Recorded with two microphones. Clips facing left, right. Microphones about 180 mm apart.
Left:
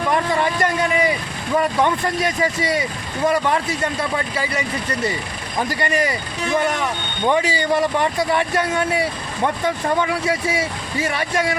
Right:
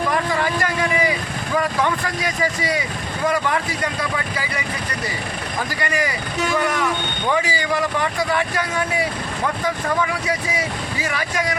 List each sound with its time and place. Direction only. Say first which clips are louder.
0.3 s a sound: left 2 dB; 25° left (ahead or behind)
1.5 s speech: left 3 dB; 25° left (ahead or behind)
5.8 s speech: left 2 dB; 25° left (ahead or behind)
7.3 s speech: left 3 dB; 25° left (ahead or behind)